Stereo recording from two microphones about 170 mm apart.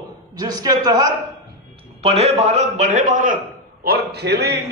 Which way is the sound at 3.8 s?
70° right (ahead or behind).